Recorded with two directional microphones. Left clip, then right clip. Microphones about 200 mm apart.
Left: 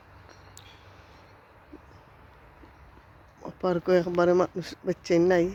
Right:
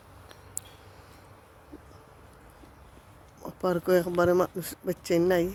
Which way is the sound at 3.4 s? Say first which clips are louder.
Left 1 dB; 10° left (ahead or behind).